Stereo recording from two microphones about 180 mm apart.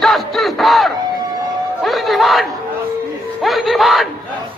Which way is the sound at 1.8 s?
Centre (ahead or behind).